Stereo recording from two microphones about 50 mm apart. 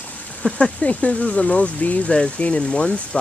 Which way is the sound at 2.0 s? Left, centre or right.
Centre.